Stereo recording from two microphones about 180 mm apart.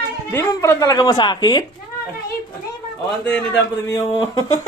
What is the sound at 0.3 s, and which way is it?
Speech, 15° left (ahead or behind).